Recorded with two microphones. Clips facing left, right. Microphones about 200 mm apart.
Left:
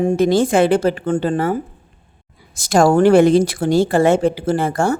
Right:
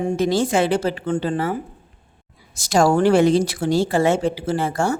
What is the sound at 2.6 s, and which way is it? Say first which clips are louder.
A woman's voice: left 4 dB; 50° left (ahead or behind).